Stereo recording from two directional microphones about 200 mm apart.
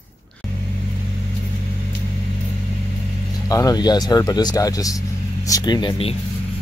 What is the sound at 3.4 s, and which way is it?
Speech, 15° left (ahead or behind).